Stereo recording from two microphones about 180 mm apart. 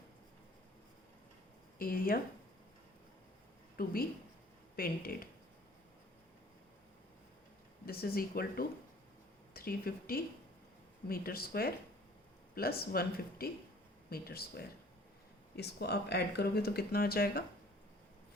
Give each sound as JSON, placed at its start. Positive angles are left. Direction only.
{"t": 1.8, "sound": "speech", "side_deg": 55}
{"t": 3.8, "sound": "speech", "side_deg": 55}
{"t": 7.9, "sound": "speech", "side_deg": 55}